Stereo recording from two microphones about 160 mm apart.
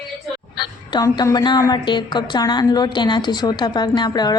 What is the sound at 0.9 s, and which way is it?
A woman's voice, 25° left (ahead or behind).